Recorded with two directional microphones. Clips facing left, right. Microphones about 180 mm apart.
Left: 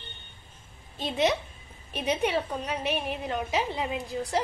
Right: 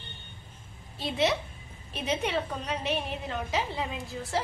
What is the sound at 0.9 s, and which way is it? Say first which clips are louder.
A woman's voice: left 1 dB; 20° left (ahead or behind).